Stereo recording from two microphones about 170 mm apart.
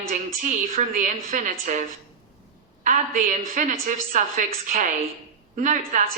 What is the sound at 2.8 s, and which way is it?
Speech, 55° right (ahead or behind).